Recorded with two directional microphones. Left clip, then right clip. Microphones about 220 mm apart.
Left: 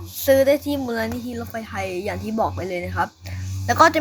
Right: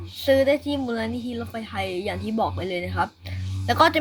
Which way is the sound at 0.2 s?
5° left (ahead or behind).